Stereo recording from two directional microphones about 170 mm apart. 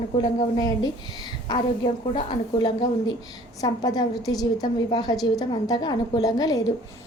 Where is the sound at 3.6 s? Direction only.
20° left (ahead or behind).